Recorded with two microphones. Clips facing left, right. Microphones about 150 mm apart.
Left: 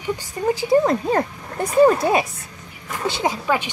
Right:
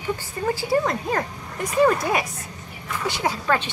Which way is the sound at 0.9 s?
30° left (ahead or behind).